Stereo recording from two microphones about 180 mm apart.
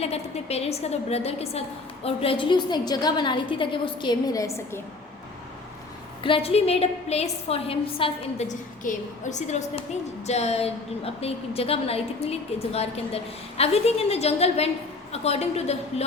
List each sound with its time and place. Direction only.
0.0 s a woman's voice: 35° left (ahead or behind); by 4.8 s 15° left (ahead or behind)
6.2 s a woman's voice: 30° left (ahead or behind)